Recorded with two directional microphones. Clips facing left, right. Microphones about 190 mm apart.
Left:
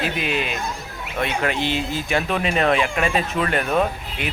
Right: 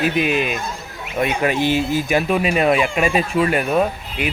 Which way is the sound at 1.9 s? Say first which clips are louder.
Right 5 dB; 15° right (ahead or behind).